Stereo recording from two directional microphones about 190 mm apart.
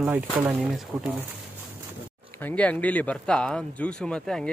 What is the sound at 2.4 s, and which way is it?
Speech, 5° left (ahead or behind).